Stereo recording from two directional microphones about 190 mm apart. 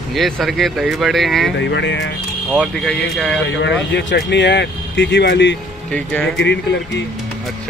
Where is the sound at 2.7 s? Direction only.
5° left (ahead or behind).